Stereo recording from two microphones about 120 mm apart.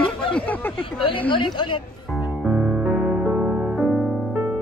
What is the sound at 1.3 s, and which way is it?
Speech, 40° left (ahead or behind).